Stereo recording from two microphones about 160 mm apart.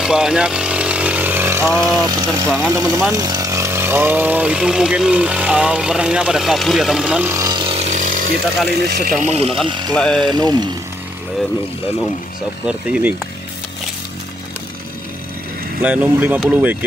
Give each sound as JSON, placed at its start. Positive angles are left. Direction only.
{"t": 0.0, "sound": "chainsaw", "side_deg": -5}
{"t": 2.0, "sound": "speech", "side_deg": -25}
{"t": 7.3, "sound": "a sound", "side_deg": -25}
{"t": 8.6, "sound": "speech", "side_deg": -90}
{"t": 9.2, "sound": "speech", "side_deg": -40}
{"t": 9.7, "sound": "speech", "side_deg": -30}
{"t": 9.9, "sound": "speech", "side_deg": 5}
{"t": 10.2, "sound": "speech", "side_deg": -25}
{"t": 12.6, "sound": "speech", "side_deg": -5}
{"t": 15.8, "sound": "speech", "side_deg": -10}